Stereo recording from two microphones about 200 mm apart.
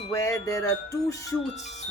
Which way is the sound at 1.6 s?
35° left (ahead or behind).